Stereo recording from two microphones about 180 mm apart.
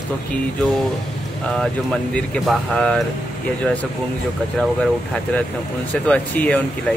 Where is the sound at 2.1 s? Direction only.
5° left (ahead or behind).